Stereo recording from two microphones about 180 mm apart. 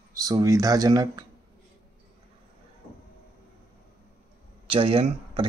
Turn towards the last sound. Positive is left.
turn(degrees=-30)  # may be behind; listen again after turning